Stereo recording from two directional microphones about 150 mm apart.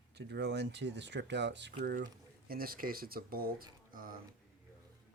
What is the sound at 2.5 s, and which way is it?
Speech, 75° right (ahead or behind).